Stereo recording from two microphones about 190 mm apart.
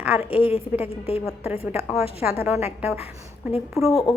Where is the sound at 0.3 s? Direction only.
30° left (ahead or behind).